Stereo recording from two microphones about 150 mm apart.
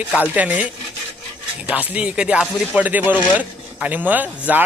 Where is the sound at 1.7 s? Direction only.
10° right (ahead or behind).